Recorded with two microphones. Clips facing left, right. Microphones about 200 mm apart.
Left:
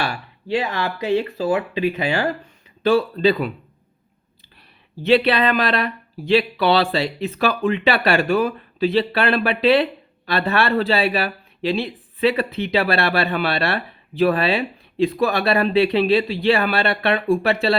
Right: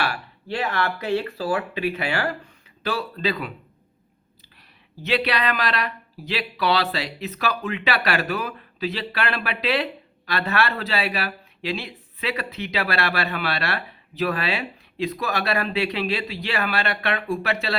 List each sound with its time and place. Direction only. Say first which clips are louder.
0.0 s speech: left 2 dB; 20° left (ahead or behind)
5.0 s speech: left 7 dB; 30° left (ahead or behind)